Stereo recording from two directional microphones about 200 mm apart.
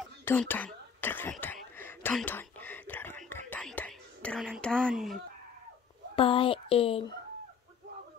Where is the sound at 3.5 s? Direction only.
5° left (ahead or behind).